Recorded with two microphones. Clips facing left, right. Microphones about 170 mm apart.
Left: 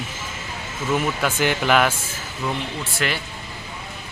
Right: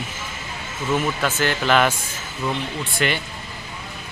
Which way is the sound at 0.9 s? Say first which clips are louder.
Even; 10° left (ahead or behind).